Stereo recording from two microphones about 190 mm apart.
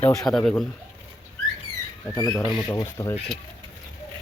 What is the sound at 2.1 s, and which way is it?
Speech, 20° left (ahead or behind).